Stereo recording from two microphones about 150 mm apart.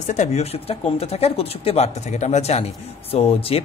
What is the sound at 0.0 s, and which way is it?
Speech, 55° left (ahead or behind).